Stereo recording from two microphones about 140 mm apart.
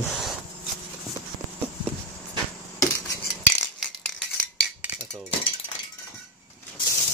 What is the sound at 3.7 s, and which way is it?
Rattle, 5° left (ahead or behind).